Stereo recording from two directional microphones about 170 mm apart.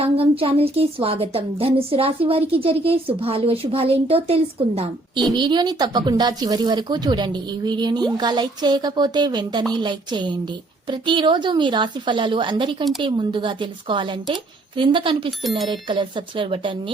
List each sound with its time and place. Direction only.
0.0 s a woman's voice: 35° right (ahead or behind)